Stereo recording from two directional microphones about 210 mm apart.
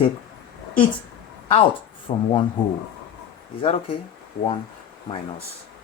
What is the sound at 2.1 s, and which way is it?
Speech, 30° left (ahead or behind).